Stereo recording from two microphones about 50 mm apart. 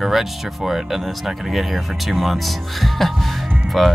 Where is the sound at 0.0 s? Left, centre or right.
Centre.